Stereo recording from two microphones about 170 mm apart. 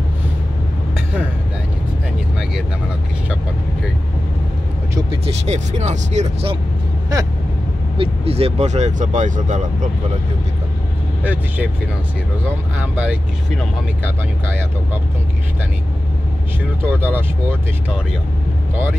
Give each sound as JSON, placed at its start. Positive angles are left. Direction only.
{"t": 5.1, "sound": "speech", "side_deg": -40}
{"t": 8.0, "sound": "speech", "side_deg": -35}
{"t": 11.2, "sound": "speech", "side_deg": -10}
{"t": 12.7, "sound": "speech", "side_deg": -10}
{"t": 16.8, "sound": "speech", "side_deg": -15}